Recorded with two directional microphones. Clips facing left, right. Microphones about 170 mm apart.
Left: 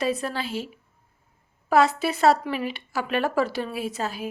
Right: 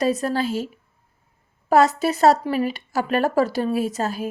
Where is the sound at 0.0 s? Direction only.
40° right (ahead or behind).